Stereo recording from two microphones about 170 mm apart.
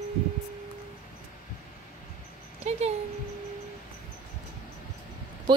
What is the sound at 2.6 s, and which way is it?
Speech, 40° right (ahead or behind).